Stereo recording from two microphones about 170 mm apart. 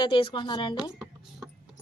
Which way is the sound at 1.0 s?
Centre (ahead or behind).